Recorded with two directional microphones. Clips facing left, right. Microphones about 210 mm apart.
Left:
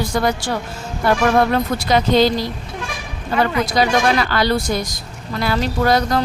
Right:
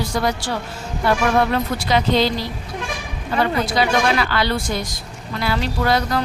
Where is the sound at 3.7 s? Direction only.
40° left (ahead or behind).